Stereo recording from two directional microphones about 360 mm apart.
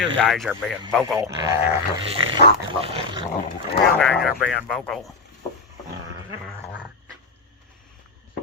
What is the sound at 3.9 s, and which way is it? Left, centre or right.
Speech, centre.